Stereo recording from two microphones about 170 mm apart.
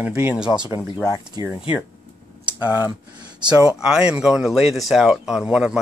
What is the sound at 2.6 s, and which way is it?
Speech, 10° right (ahead or behind).